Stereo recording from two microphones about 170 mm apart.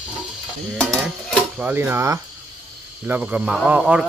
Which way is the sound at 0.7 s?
Centre (ahead or behind).